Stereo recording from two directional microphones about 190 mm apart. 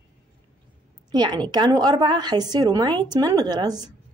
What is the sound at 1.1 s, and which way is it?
Speech, 25° right (ahead or behind).